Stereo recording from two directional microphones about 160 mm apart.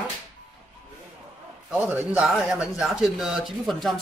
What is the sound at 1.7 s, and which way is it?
Speech, 10° right (ahead or behind).